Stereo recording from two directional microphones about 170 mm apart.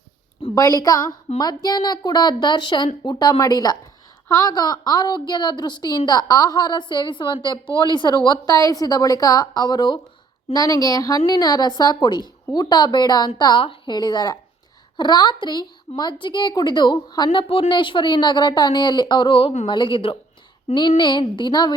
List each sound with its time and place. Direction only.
0.5 s a woman's voice: 20° left (ahead or behind)